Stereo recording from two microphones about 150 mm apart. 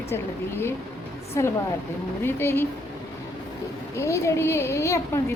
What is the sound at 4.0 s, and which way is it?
A woman's voice, 20° left (ahead or behind).